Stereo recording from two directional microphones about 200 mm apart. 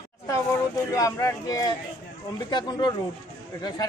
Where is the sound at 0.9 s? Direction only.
15° left (ahead or behind).